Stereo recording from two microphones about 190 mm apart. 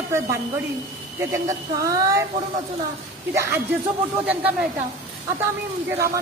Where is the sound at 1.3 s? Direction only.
15° right (ahead or behind).